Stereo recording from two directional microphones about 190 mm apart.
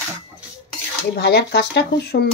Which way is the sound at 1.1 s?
60° left (ahead or behind).